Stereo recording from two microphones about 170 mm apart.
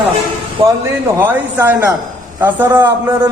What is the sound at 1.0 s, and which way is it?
A man's voice, 15° right (ahead or behind).